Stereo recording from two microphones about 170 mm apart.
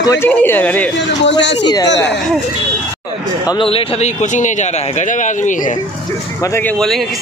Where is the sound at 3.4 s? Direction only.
30° left (ahead or behind); by 5.7 s 50° left (ahead or behind).